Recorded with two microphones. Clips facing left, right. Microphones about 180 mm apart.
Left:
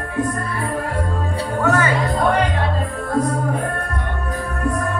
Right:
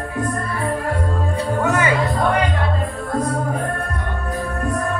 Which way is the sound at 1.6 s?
15° right (ahead or behind).